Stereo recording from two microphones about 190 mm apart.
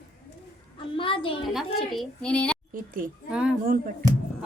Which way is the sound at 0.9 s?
25° left (ahead or behind).